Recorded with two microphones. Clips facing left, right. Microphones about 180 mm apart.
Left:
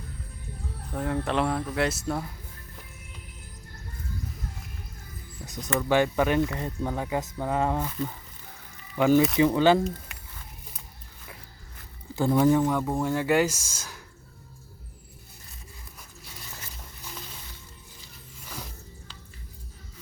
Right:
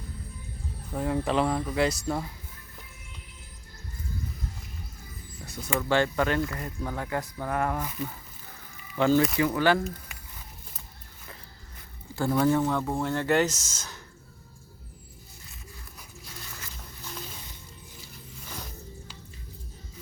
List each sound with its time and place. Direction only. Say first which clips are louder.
0.9 s speech: right 1 dB; centre (ahead or behind)
5.5 s speech: left 2 dB; 15° left (ahead or behind)
9.0 s speech: left 3 dB; 15° left (ahead or behind)
9.8 s a sound: left 4 dB; 5° right (ahead or behind)
12.1 s speech: left 3 dB; 20° left (ahead or behind)